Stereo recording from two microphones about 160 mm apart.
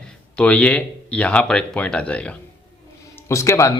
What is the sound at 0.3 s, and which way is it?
Speech, 5° left (ahead or behind).